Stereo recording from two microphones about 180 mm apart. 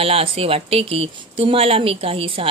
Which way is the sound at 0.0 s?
30° right (ahead or behind).